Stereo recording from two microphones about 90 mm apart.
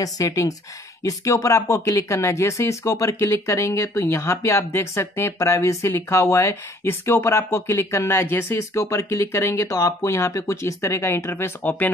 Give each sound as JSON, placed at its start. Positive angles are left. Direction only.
{"t": 0.0, "sound": "speech", "side_deg": 40}